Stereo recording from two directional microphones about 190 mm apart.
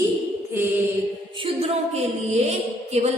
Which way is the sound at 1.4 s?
35° right (ahead or behind).